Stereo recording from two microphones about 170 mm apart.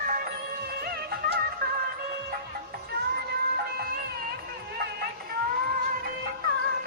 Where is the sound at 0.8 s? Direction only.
65° right (ahead or behind).